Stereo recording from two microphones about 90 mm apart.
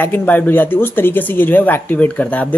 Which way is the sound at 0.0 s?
20° left (ahead or behind).